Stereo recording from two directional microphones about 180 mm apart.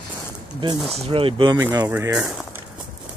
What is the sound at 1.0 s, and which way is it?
Speech, 30° right (ahead or behind).